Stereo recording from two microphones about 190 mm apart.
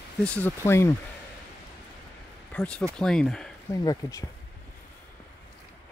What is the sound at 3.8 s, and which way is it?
Speech, 20° left (ahead or behind).